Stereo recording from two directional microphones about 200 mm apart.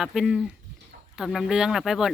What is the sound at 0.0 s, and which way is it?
Speech, centre (ahead or behind).